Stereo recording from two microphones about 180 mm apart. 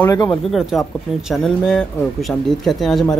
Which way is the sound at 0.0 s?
20° left (ahead or behind).